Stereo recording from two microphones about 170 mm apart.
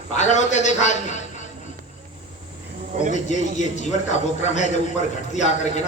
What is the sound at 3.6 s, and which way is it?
A man's voice, 45° left (ahead or behind).